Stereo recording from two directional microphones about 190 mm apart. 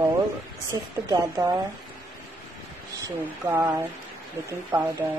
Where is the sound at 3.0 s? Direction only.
15° right (ahead or behind).